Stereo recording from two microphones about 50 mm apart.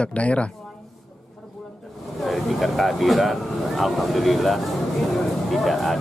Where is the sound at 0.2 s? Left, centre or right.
Left.